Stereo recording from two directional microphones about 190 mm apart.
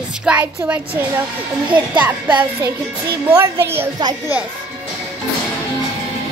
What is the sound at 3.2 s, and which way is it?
Speech, 15° right (ahead or behind).